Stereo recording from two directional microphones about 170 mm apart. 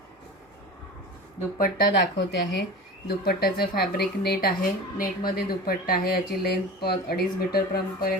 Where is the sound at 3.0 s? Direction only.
65° left (ahead or behind).